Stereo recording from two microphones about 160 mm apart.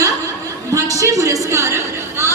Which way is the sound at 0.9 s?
20° right (ahead or behind).